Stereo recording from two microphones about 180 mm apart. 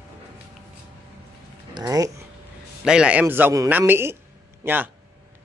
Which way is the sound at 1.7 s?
20° right (ahead or behind).